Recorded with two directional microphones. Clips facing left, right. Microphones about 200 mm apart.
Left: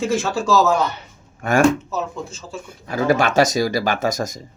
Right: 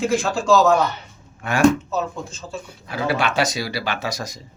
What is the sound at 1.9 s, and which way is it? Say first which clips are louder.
Speech: right 1 dB; 10° left (ahead or behind).